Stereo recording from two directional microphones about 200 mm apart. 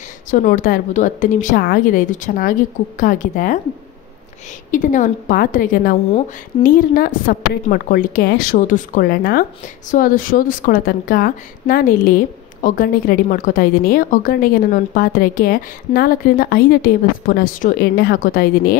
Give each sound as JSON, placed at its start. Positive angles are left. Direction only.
{"t": 0.3, "sound": "a woman's voice", "side_deg": 40}
{"t": 4.6, "sound": "a woman's voice", "side_deg": 40}